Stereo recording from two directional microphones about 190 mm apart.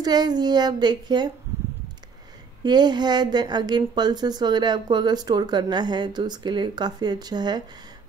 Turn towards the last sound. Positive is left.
turn(degrees=-20)  # may be behind; listen again after turning